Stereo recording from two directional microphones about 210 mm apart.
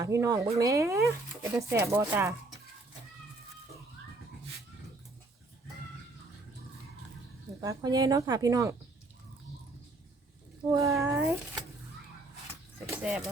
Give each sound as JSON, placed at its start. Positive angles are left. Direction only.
{"t": 0.0, "sound": "speech", "side_deg": -15}
{"t": 7.6, "sound": "speech", "side_deg": -15}
{"t": 10.7, "sound": "speech", "side_deg": -15}
{"t": 12.8, "sound": "speech", "side_deg": -5}